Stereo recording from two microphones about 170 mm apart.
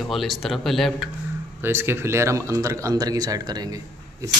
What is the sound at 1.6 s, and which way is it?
Speech, 15° right (ahead or behind).